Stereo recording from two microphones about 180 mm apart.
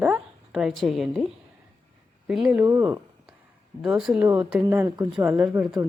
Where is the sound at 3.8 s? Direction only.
Centre (ahead or behind).